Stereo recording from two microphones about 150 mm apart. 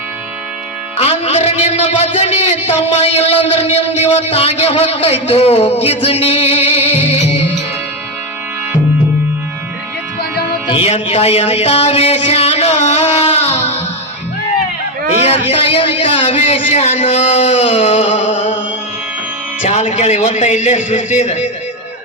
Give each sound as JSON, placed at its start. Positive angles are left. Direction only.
{"t": 0.9, "sound": "a man's voice", "side_deg": 45}
{"t": 10.7, "sound": "music", "side_deg": 40}
{"t": 15.2, "sound": "a man's voice", "side_deg": 40}
{"t": 19.6, "sound": "a man's voice", "side_deg": 45}